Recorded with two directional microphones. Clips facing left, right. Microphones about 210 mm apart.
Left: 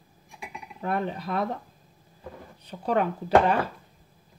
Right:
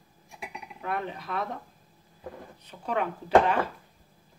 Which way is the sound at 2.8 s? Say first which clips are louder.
Left 5 dB; 35° left (ahead or behind).